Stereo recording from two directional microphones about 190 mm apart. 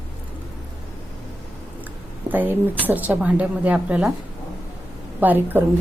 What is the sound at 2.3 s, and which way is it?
Speech, 10° right (ahead or behind).